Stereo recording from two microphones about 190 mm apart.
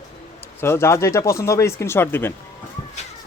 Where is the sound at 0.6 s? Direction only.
15° left (ahead or behind).